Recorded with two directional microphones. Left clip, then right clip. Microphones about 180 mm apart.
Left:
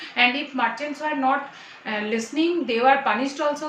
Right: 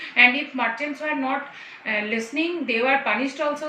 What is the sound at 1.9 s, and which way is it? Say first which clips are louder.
A woman's voice: right 1 dB; 20° left (ahead or behind).